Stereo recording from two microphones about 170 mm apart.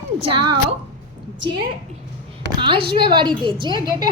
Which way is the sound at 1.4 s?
80° right.